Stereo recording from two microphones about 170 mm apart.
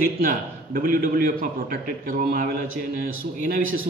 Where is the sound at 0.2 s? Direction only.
55° right (ahead or behind).